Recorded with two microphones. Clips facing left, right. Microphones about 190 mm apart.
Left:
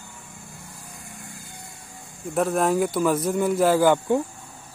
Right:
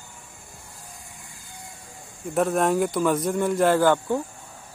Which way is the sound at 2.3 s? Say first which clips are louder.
Even; centre (ahead or behind).